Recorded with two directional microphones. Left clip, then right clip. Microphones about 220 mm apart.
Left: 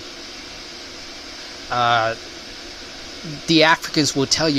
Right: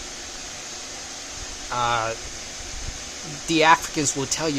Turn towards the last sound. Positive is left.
turn(degrees=10)  # may be behind; listen again after turning